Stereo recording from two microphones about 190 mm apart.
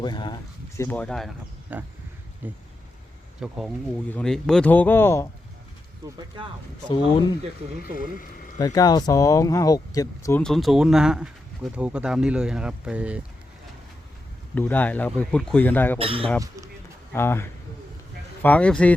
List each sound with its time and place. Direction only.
0.0 s speech: 20° left (ahead or behind)
0.9 s speech: 5° left (ahead or behind)
1.7 s a sound: 10° right (ahead or behind)
3.4 s speech: centre (ahead or behind)
6.8 s speech: 25° left (ahead or behind)
8.5 s speech: 20° left (ahead or behind)
10.4 s speech: centre (ahead or behind)
14.5 s speech: 10° left (ahead or behind)
16.0 s speech: 30° right (ahead or behind)
17.1 s speech: 10° left (ahead or behind)